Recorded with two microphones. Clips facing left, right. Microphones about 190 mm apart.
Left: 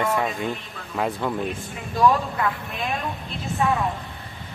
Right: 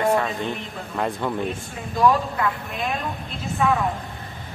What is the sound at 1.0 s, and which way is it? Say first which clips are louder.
Speech: even; centre (ahead or behind).